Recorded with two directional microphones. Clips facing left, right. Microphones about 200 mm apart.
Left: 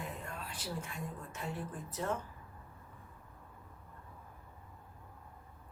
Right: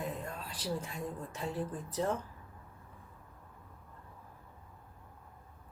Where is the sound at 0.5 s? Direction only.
35° right (ahead or behind).